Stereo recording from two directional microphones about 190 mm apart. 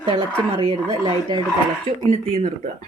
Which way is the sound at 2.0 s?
35° right (ahead or behind).